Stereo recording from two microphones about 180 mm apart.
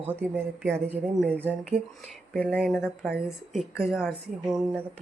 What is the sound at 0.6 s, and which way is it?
Speech, centre (ahead or behind).